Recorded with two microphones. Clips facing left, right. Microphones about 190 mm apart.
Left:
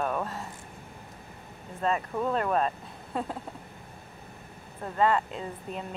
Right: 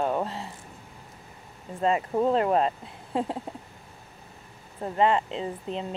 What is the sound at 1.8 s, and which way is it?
Speech, 25° right (ahead or behind).